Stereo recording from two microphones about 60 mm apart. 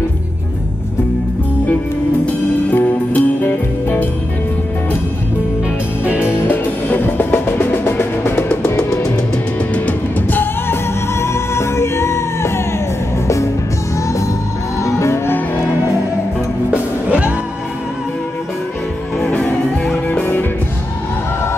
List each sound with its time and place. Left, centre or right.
2.7 s music: left
6.2 s music: left
9.8 s music: left
14.0 s music: left
15.2 s music: left
16.7 s music: right
19.3 s music: left